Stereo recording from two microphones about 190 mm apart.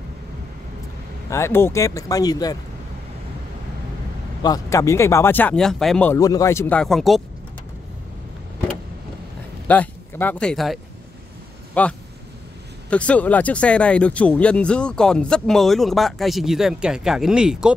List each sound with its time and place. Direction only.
1.3 s speech: 15° left (ahead or behind)
4.4 s speech: 20° left (ahead or behind); by 7.2 s centre (ahead or behind)
9.7 s speech: 10° left (ahead or behind)